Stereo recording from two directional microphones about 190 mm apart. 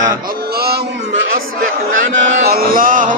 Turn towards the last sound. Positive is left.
turn(degrees=-45)  # may be behind; listen again after turning